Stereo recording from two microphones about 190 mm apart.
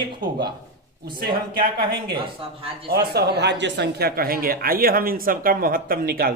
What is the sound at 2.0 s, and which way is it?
Speech, 25° right (ahead or behind).